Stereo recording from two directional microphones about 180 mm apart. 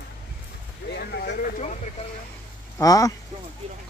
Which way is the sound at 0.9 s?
65° left (ahead or behind).